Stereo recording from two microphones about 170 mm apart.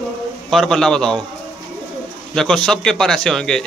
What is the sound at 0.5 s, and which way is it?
Speech, 5° left (ahead or behind).